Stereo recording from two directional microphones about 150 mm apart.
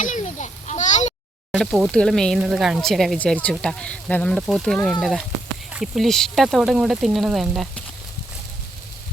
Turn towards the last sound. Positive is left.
turn(degrees=0)  # may be behind; listen again after turning